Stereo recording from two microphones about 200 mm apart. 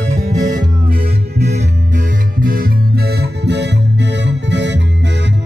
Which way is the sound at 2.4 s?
45° right (ahead or behind).